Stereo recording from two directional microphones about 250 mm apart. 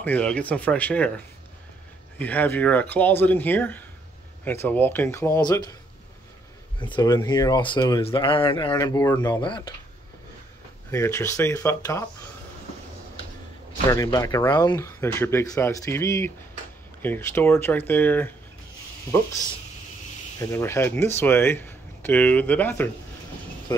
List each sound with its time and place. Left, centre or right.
0.0 s speech: centre
6.8 s speech: centre
10.9 s speech: centre
13.8 s speech: centre
20.3 s speech: centre